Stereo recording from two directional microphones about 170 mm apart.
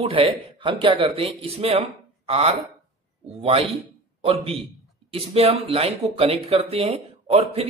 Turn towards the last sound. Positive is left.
turn(degrees=-35)  # may be behind; listen again after turning